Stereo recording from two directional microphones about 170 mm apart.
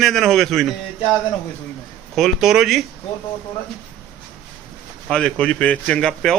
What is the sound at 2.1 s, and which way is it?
Speech, centre (ahead or behind).